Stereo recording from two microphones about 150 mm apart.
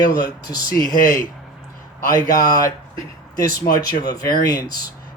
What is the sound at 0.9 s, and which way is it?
A man's voice, 70° left (ahead or behind).